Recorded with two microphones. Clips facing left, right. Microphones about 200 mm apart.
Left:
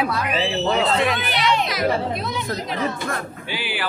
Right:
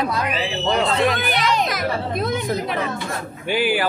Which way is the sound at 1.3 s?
45° right (ahead or behind).